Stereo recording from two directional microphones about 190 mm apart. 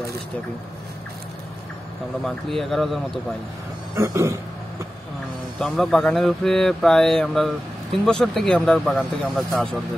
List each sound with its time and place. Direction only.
2.2 s speech: centre (ahead or behind)
3.9 s a sound: 15° right (ahead or behind)
5.6 s speech: centre (ahead or behind)